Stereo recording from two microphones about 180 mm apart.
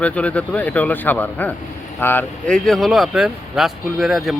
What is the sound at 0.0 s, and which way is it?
Speech, 5° left (ahead or behind).